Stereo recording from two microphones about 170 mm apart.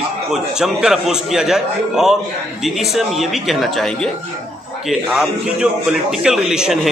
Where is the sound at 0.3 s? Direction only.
5° right (ahead or behind).